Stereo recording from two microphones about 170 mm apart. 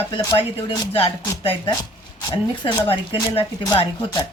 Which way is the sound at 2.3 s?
30° left (ahead or behind).